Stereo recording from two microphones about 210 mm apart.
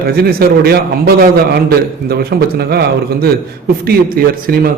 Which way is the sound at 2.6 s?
45° right (ahead or behind).